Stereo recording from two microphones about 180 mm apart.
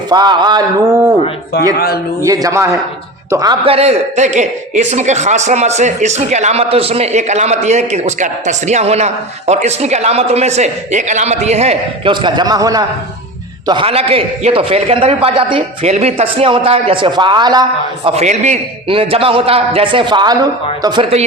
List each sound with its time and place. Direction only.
0.1 s speech: 25° right (ahead or behind)
1.5 s speech: 65° left (ahead or behind)
2.2 s a man's voice: 20° right (ahead or behind)
3.6 s a man's voice: 35° right (ahead or behind)